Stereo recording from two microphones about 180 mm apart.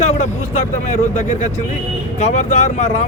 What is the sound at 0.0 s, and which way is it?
Speech, 40° left (ahead or behind).